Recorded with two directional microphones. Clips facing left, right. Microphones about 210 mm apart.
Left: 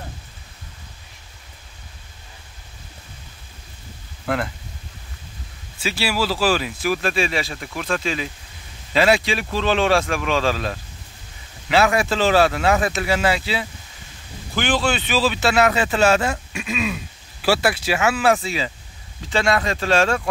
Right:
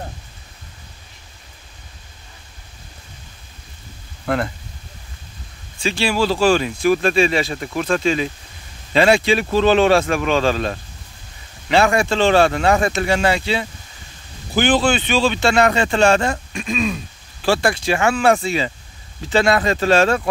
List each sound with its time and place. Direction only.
5.8 s speech: 5° left (ahead or behind)
9.6 s speech: 40° right (ahead or behind)
11.7 s speech: 5° left (ahead or behind)
14.5 s speech: 35° right (ahead or behind)
14.9 s speech: centre (ahead or behind)
19.4 s speech: 35° right (ahead or behind)